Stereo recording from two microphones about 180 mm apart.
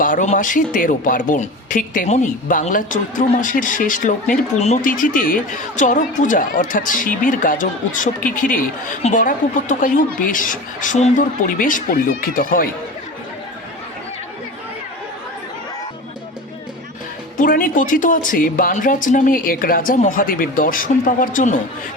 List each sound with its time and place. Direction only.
0.0 s speech: 45° left (ahead or behind)
17.3 s speech: 50° left (ahead or behind)